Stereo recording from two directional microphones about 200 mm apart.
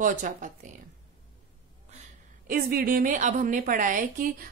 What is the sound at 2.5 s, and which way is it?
A woman's voice, 45° right (ahead or behind).